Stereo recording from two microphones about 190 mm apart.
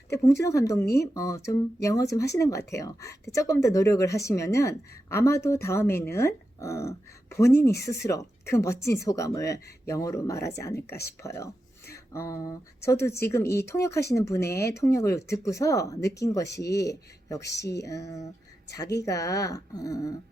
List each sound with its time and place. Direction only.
0.1 s a woman's voice: 15° left (ahead or behind)
17.4 s speech: 65° left (ahead or behind)
17.8 s a woman's voice: 15° left (ahead or behind)